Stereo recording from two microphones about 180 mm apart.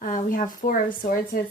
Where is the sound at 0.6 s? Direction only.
50° left (ahead or behind).